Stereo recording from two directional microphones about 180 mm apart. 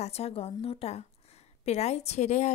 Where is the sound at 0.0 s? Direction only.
35° left (ahead or behind).